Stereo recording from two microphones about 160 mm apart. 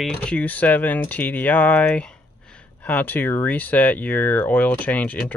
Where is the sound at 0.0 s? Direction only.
5° left (ahead or behind).